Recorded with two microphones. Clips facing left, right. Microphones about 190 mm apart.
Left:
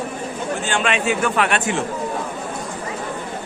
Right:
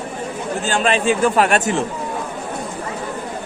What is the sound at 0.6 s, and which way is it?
A man's voice, 35° right (ahead or behind).